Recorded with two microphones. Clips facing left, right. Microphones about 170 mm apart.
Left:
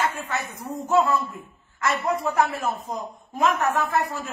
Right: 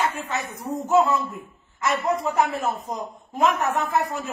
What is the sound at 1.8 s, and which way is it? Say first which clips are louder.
A woman's voice: right 1 dB; 20° right (ahead or behind).